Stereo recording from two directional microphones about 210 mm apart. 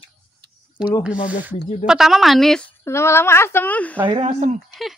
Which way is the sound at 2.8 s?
10° left (ahead or behind).